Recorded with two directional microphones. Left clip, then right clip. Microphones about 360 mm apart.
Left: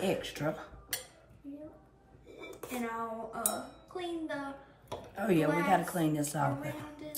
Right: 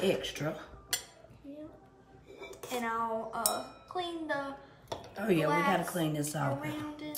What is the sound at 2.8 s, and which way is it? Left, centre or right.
A woman's voice, centre.